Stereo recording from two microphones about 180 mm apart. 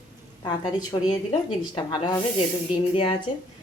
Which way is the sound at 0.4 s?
25° left (ahead or behind).